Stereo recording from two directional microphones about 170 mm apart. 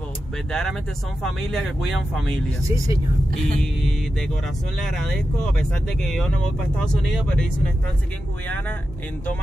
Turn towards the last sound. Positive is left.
turn(degrees=5)  # may be behind; listen again after turning